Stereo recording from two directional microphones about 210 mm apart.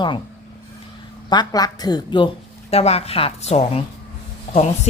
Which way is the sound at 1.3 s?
20° left (ahead or behind).